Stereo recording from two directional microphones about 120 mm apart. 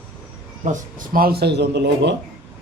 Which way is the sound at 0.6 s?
75° right (ahead or behind).